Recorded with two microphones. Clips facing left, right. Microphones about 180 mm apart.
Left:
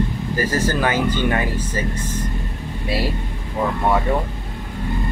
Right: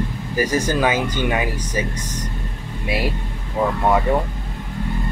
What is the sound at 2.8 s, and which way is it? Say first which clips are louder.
Speech: even; 15° right (ahead or behind).